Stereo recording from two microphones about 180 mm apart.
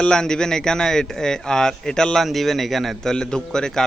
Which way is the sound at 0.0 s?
5° left (ahead or behind).